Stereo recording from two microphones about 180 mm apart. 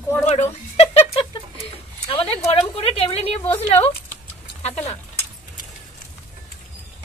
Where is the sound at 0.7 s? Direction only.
35° left (ahead or behind).